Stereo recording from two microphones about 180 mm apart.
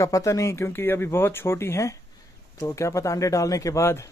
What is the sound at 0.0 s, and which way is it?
A man's voice, 20° left (ahead or behind).